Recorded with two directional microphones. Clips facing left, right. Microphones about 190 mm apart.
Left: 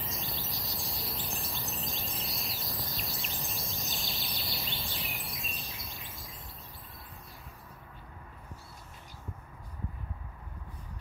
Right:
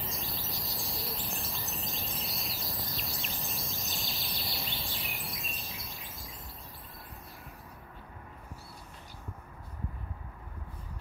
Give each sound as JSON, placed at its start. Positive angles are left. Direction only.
{"t": 0.0, "sound": "bird vocalization", "side_deg": 0}